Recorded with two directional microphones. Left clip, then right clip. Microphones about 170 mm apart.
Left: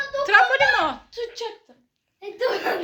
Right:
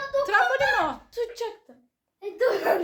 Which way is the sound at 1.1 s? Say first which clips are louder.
Right 1 dB; 90° right.